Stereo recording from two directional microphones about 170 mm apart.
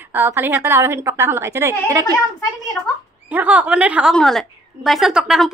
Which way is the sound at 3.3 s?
10° right (ahead or behind).